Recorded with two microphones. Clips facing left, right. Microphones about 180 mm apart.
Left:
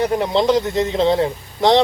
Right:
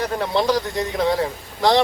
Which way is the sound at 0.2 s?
20° left (ahead or behind).